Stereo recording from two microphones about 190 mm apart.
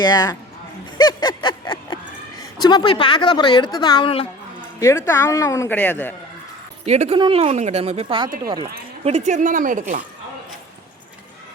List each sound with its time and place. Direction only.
0.0 s a woman's voice: 20° left (ahead or behind)
0.9 s a sound: 20° left (ahead or behind)
2.4 s a woman's voice: 20° left (ahead or behind)
4.8 s speech: 15° left (ahead or behind)
6.8 s speech: 35° right (ahead or behind)
9.0 s speech: 35° right (ahead or behind)